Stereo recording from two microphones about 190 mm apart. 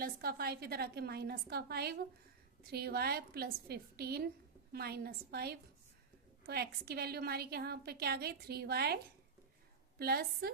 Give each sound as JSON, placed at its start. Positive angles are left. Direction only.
{"t": 0.0, "sound": "a woman's voice", "side_deg": -55}
{"t": 10.0, "sound": "a woman's voice", "side_deg": -55}